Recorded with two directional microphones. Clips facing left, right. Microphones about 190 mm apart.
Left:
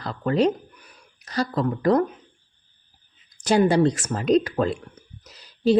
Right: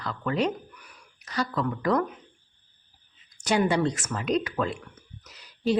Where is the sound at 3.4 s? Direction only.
35° left (ahead or behind).